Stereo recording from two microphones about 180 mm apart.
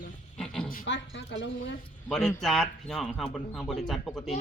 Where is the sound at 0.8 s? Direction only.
90° left.